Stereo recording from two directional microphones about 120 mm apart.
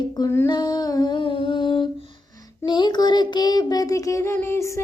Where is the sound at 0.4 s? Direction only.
35° left (ahead or behind).